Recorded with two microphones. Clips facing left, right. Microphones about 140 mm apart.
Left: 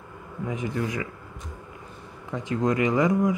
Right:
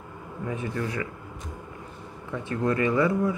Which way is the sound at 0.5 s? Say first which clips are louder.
Left 2 dB; 15° left (ahead or behind).